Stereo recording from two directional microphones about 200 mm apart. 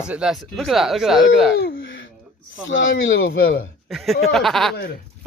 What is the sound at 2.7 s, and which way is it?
Speech, 70° left (ahead or behind).